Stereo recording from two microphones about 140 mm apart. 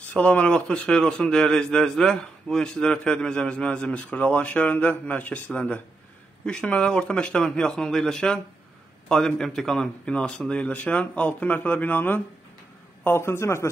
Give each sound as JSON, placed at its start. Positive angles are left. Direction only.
{"t": 0.1, "sound": "a man's voice", "side_deg": 10}